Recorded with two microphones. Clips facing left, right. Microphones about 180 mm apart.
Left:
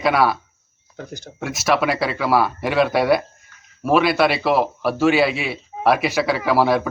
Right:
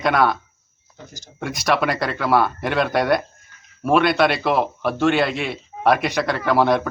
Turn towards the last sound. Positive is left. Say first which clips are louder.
# even
turn(degrees=5)  # may be behind; listen again after turning